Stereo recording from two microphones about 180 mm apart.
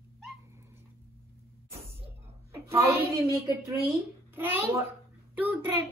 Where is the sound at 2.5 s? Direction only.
15° right (ahead or behind).